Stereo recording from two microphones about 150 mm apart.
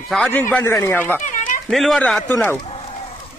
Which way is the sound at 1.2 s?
60° left (ahead or behind).